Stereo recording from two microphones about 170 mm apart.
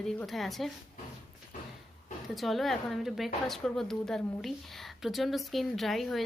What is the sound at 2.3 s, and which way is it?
Speech, centre (ahead or behind).